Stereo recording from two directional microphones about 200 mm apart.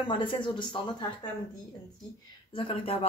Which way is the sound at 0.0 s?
25° left (ahead or behind).